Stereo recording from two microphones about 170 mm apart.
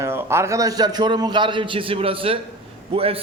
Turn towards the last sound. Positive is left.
turn(degrees=-35)  # may be behind; listen again after turning